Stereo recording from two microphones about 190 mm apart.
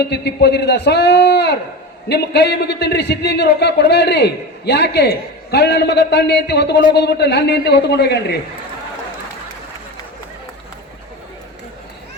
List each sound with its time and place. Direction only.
0.1 s a man's voice: 60° left (ahead or behind)